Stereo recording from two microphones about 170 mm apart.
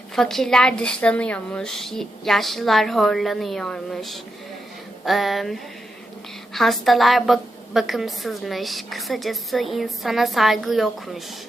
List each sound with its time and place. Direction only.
0.2 s a woman's voice: centre (ahead or behind)